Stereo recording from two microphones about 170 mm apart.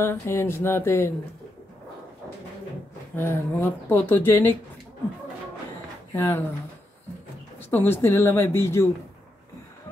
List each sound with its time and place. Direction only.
0.0 s speech: 15° left (ahead or behind)
3.2 s speech: 15° left (ahead or behind)
6.1 s speech: 15° left (ahead or behind)
7.7 s speech: 15° left (ahead or behind)